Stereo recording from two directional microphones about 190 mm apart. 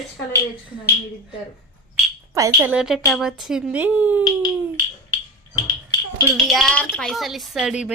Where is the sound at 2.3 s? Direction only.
15° right (ahead or behind).